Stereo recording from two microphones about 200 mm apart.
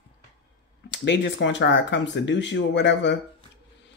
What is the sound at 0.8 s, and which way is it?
Speech, 60° left (ahead or behind).